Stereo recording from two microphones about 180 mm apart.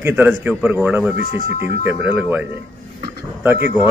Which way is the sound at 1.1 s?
45° left (ahead or behind).